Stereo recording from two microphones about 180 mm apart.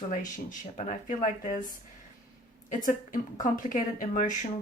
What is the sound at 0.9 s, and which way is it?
Speech, 45° left (ahead or behind).